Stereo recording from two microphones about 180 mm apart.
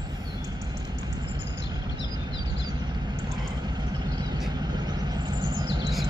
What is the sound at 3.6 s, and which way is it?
Vehicle, 25° right (ahead or behind).